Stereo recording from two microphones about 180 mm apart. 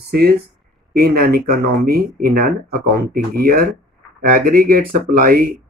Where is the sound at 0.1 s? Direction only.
60° right (ahead or behind).